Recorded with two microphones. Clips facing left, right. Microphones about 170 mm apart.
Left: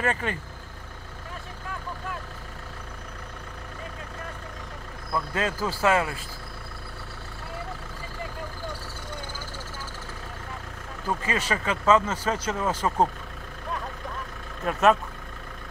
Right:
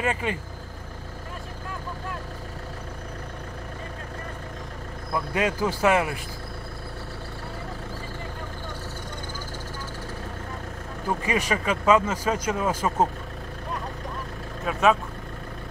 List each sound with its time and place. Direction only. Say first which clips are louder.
0.0 s speech: right 1 dB; 15° right (ahead or behind)
5.1 s speech: right 2 dB; 15° right (ahead or behind)
11.1 s speech: right 2 dB; 15° right (ahead or behind)
14.6 s speech: even; centre (ahead or behind)